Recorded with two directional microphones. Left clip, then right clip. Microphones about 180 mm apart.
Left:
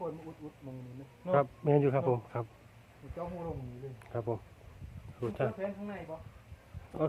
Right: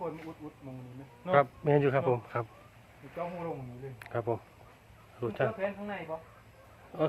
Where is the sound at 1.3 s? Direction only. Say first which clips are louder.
Right 3 dB; centre (ahead or behind).